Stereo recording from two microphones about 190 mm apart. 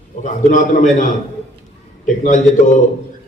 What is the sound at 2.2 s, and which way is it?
Speech, 40° left (ahead or behind).